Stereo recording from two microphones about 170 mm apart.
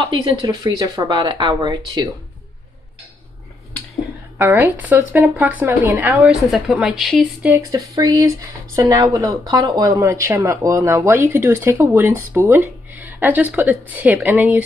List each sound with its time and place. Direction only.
0.0 s speech: 30° right (ahead or behind)
4.4 s speech: 15° right (ahead or behind)
7.7 s speech: 20° right (ahead or behind)